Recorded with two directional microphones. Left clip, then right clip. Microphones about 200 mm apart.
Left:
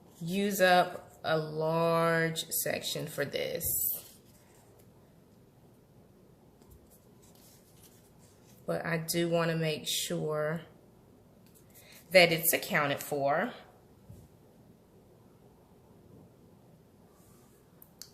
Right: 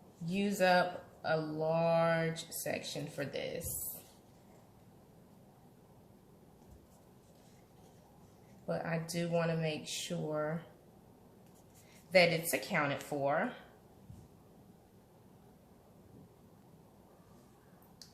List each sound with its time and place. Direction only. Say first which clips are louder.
0.3 s speech: left 5 dB; 40° left (ahead or behind)
8.6 s speech: left 4 dB; 40° left (ahead or behind)
12.1 s speech: left 5 dB; 35° left (ahead or behind)